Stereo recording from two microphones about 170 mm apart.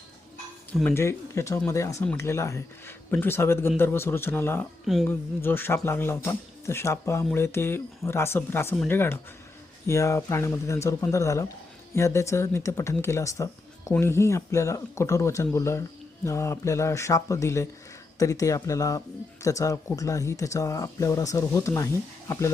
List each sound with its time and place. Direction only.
0.7 s speech: 10° left (ahead or behind)